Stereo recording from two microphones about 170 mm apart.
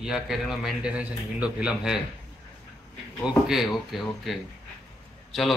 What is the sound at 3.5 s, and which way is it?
Speech, centre (ahead or behind).